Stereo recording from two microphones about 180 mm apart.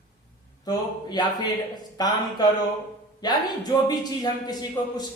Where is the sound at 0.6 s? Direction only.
25° left (ahead or behind).